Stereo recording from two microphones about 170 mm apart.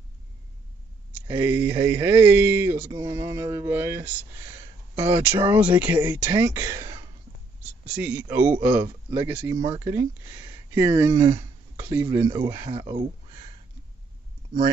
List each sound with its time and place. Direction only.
1.3 s speech: 10° right (ahead or behind)
9.6 s speech: 30° right (ahead or behind)
9.8 s speech: 15° right (ahead or behind)
12.6 s speech: 35° right (ahead or behind)